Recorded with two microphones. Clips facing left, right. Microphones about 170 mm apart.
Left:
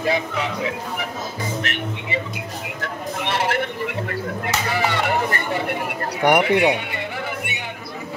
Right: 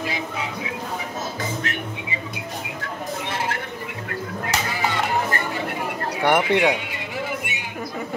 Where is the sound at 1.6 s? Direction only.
80° left.